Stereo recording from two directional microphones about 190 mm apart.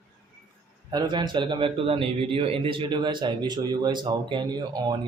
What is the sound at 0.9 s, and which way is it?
A man's voice, 20° right (ahead or behind).